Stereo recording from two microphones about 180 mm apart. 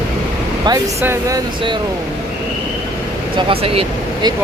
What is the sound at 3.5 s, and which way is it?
Speech, 30° right (ahead or behind).